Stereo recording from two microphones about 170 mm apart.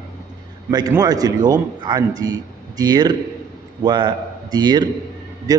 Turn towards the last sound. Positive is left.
turn(degrees=-20)  # may be behind; listen again after turning